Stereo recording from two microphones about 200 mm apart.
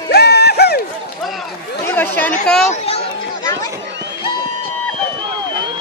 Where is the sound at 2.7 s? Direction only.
30° left (ahead or behind).